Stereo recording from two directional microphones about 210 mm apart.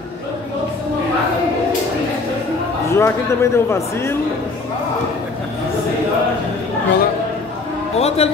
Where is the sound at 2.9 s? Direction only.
15° left (ahead or behind).